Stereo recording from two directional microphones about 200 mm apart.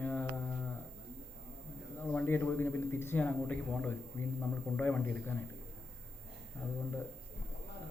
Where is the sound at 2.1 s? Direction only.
10° left (ahead or behind).